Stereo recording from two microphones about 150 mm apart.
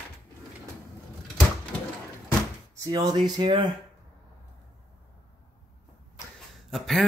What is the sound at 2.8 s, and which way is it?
Speech, 25° right (ahead or behind).